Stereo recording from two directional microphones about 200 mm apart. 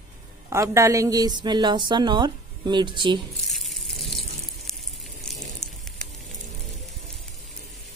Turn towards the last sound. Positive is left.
turn(degrees=5)  # may be behind; listen again after turning